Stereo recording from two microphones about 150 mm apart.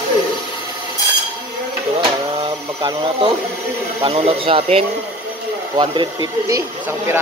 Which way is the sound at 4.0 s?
40° right (ahead or behind).